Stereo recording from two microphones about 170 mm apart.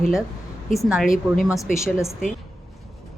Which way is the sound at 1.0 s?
55° left (ahead or behind).